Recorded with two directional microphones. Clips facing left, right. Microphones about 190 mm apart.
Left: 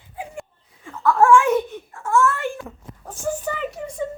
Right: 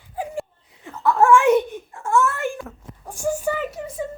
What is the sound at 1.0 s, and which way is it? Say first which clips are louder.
Speech: even; 20° right (ahead or behind).